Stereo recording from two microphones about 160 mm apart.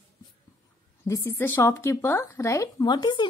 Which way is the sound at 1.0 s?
20° left (ahead or behind).